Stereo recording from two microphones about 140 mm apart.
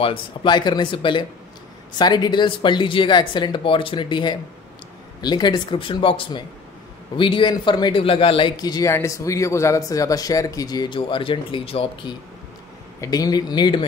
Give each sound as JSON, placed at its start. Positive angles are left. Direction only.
{"t": 0.0, "sound": "speech", "side_deg": 40}